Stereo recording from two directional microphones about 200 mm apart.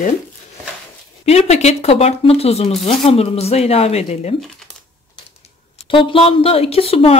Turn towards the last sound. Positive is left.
turn(degrees=30)  # may be behind; listen again after turning